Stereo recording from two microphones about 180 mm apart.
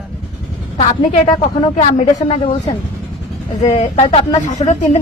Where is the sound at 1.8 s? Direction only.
45° left (ahead or behind).